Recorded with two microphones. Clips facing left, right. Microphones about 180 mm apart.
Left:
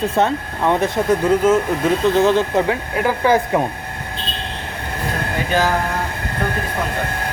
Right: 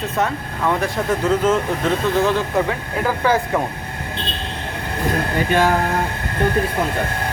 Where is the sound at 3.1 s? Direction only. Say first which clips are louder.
Left 2 dB; 15° left (ahead or behind).